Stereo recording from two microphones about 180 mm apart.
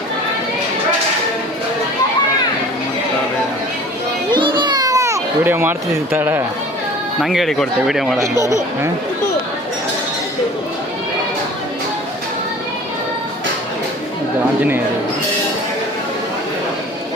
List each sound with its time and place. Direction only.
4.3 s a sound: 25° right (ahead or behind)
7.2 s speech: centre (ahead or behind)
8.2 s speech: 15° right (ahead or behind)